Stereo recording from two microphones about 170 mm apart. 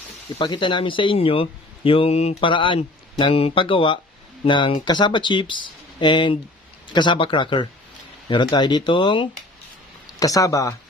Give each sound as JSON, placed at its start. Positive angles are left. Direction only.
{"t": 0.3, "sound": "speech", "side_deg": 30}